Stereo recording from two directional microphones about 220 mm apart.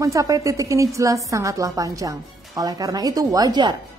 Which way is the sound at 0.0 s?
15° right (ahead or behind).